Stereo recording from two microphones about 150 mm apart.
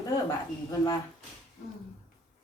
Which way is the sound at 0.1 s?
20° left (ahead or behind).